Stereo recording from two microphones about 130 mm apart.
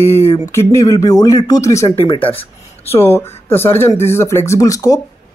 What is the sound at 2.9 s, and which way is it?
Speech, 20° left (ahead or behind).